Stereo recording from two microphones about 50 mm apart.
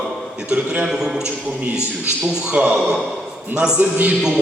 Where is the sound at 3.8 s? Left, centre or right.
Right.